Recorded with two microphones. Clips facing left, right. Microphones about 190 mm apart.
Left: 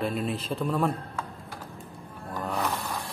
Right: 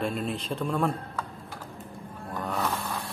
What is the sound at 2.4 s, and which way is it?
Snoring, centre (ahead or behind).